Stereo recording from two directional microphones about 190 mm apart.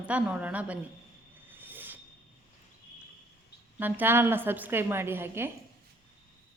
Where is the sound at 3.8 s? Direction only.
10° right (ahead or behind).